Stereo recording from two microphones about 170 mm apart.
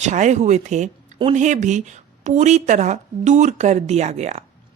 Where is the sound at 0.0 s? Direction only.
45° right (ahead or behind).